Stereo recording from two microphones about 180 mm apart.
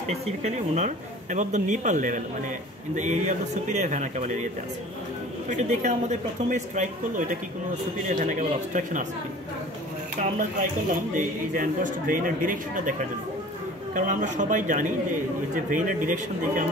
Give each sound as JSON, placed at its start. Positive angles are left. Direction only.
{"t": 0.1, "sound": "speech", "side_deg": -40}
{"t": 5.5, "sound": "speech", "side_deg": -40}
{"t": 10.9, "sound": "speech", "side_deg": -50}
{"t": 13.9, "sound": "speech", "side_deg": -45}